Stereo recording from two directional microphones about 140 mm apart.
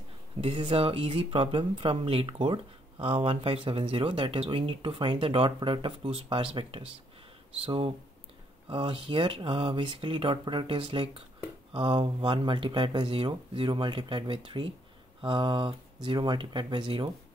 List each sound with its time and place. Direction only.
0.6 s speech: 40° right (ahead or behind)